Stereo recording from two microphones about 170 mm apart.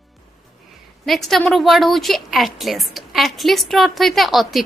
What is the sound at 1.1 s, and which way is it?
A woman's voice, centre (ahead or behind).